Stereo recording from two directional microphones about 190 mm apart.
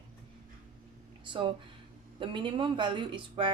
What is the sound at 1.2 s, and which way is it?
A woman's voice, 25° right (ahead or behind).